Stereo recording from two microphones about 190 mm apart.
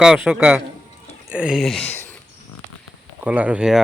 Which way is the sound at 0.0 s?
5° right (ahead or behind).